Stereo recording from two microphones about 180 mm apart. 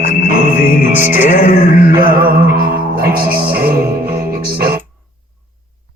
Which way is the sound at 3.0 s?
55° right (ahead or behind).